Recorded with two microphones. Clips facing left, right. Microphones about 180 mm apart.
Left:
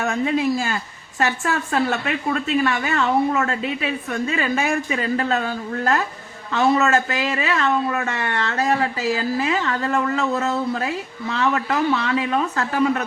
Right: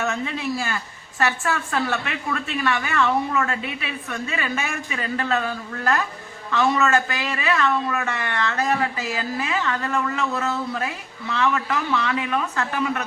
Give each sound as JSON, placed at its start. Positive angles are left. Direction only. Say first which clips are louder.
{"t": 0.0, "sound": "a woman's voice", "louder": "left 5 dB", "side_deg": 40}